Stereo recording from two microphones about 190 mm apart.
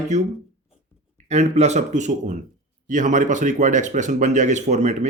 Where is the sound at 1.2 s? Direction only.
35° right (ahead or behind).